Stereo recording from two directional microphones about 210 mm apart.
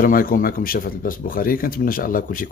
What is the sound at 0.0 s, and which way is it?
Speech, 40° left (ahead or behind).